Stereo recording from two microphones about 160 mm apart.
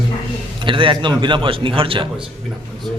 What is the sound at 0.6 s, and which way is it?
A man's voice, 30° right (ahead or behind).